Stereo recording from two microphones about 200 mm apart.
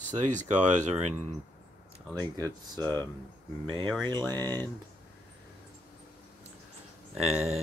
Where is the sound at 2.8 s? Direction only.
10° left (ahead or behind).